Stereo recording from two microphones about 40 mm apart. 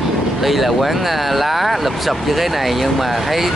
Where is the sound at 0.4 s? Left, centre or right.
Centre.